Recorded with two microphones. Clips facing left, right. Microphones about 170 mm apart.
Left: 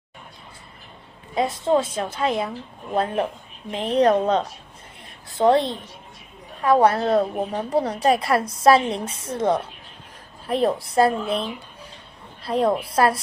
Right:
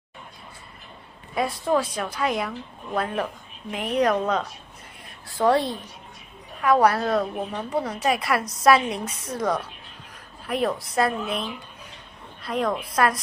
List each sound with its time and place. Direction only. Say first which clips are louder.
1.3 s a woman's voice: left 3 dB; 25° left (ahead or behind)